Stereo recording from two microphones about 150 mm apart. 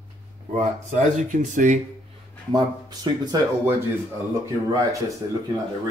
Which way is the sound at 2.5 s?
25° right (ahead or behind).